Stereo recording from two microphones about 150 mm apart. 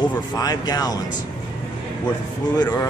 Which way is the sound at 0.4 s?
25° left (ahead or behind).